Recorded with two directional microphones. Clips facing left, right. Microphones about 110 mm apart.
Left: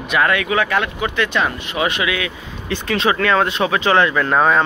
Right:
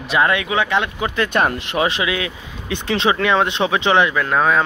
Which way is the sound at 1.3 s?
50° right (ahead or behind).